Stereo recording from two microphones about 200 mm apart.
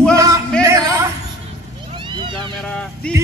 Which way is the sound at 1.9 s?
25° right (ahead or behind).